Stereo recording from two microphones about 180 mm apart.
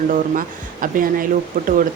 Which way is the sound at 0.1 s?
50° right (ahead or behind).